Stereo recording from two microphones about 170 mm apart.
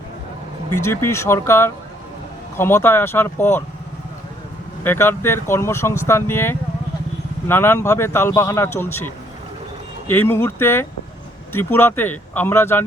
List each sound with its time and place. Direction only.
0.8 s speech: 15° left (ahead or behind)
4.8 s speech: 15° left (ahead or behind)